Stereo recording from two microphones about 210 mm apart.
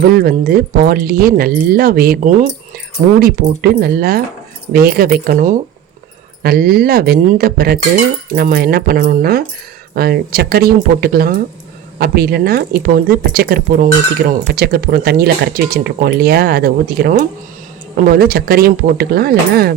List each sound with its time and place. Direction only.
0.0 s speech: 45° right (ahead or behind)